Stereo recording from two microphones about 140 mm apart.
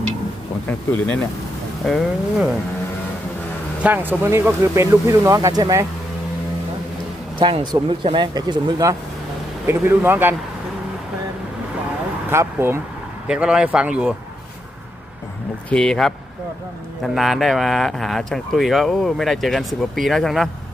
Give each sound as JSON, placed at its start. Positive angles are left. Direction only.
{"t": 1.8, "sound": "speech", "side_deg": 0}
{"t": 3.8, "sound": "speech", "side_deg": -10}
{"t": 7.3, "sound": "speech", "side_deg": -35}
{"t": 9.6, "sound": "speech", "side_deg": -15}
{"t": 12.3, "sound": "speech", "side_deg": -15}
{"t": 13.2, "sound": "speech", "side_deg": -5}
{"t": 15.7, "sound": "speech", "side_deg": 5}